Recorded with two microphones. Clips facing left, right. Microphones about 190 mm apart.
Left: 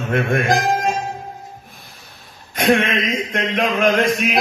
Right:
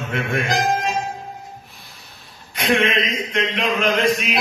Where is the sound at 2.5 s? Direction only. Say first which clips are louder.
Left 2 dB; 50° left (ahead or behind).